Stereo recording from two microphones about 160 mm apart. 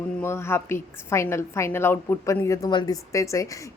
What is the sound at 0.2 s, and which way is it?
A woman's voice, 15° left (ahead or behind).